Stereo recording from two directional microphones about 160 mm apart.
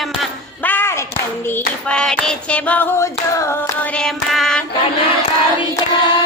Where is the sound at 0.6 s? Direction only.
10° left (ahead or behind).